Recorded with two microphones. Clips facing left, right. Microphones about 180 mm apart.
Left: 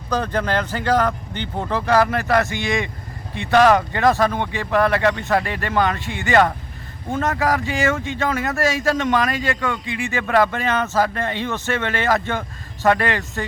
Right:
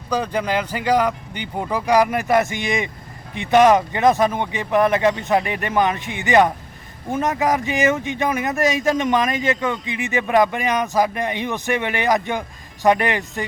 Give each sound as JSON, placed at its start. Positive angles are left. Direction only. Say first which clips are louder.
{"t": 0.1, "sound": "speech", "louder": "even", "side_deg": -10}